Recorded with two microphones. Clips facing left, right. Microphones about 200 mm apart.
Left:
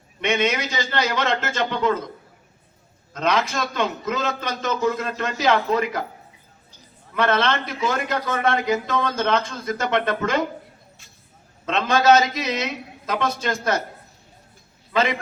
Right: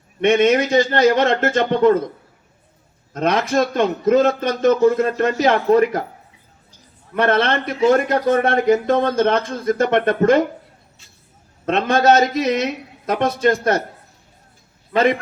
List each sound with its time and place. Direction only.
0.2 s a man's voice: 50° right (ahead or behind)
3.2 s a man's voice: 50° right (ahead or behind)
7.2 s a man's voice: 55° right (ahead or behind)
11.6 s a man's voice: 55° right (ahead or behind)
14.9 s a man's voice: 55° right (ahead or behind)